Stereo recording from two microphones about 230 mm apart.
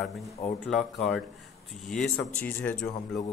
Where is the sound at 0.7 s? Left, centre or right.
Centre.